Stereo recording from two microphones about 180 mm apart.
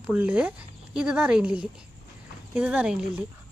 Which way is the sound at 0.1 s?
10° right (ahead or behind).